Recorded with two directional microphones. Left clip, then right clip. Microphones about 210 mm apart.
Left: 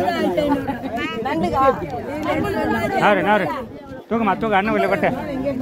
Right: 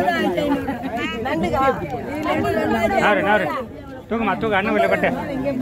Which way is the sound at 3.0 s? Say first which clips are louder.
Left 4 dB; 55° left (ahead or behind).